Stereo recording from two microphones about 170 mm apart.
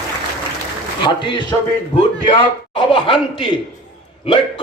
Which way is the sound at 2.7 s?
30° left (ahead or behind).